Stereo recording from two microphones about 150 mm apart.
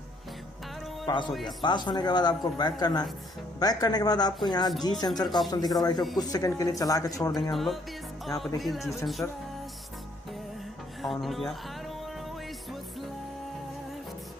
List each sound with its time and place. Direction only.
1.0 s a man's voice: 30° left (ahead or behind)
7.5 s speech: centre (ahead or behind)
11.0 s speech: centre (ahead or behind)